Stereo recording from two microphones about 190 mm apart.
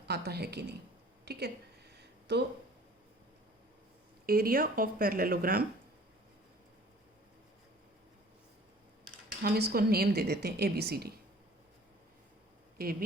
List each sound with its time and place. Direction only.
0.0 s a woman's voice: 60° right (ahead or behind)
1.2 s a sound: 60° right (ahead or behind)
4.3 s speech: 50° right (ahead or behind)
9.4 s a woman's voice: 55° right (ahead or behind)
12.7 s speech: 50° right (ahead or behind)